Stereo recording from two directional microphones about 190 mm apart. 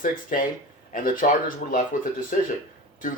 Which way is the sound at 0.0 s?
45° left (ahead or behind).